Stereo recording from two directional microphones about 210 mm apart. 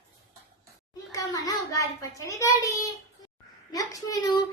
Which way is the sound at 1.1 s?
15° left (ahead or behind).